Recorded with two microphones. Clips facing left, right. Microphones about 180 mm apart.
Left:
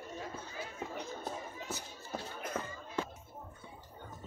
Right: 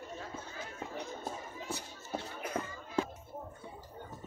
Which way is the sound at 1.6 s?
30° right (ahead or behind).